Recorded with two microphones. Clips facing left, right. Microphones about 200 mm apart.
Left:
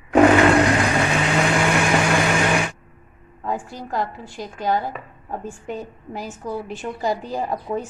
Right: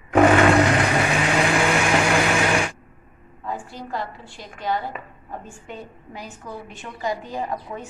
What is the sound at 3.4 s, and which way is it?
A woman's voice, 45° left (ahead or behind).